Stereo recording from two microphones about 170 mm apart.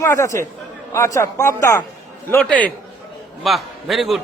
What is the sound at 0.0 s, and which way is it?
A man's voice, 15° left (ahead or behind).